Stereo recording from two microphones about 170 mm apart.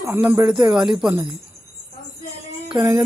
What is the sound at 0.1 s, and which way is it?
Speech, 10° right (ahead or behind).